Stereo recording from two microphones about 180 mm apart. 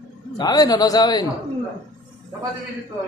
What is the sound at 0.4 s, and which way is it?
Speech, 20° left (ahead or behind).